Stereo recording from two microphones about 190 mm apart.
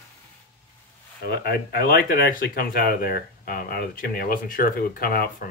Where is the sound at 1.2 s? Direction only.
55° left (ahead or behind).